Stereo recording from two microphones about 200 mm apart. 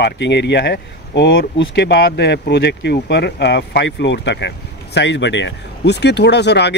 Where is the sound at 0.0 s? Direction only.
60° left (ahead or behind).